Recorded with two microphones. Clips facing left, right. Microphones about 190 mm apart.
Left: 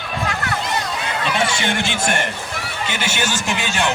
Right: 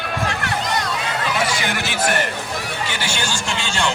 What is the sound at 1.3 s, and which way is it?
Speech, 25° left (ahead or behind).